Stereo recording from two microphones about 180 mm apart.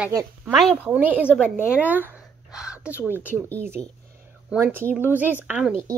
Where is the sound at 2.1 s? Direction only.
5° right (ahead or behind).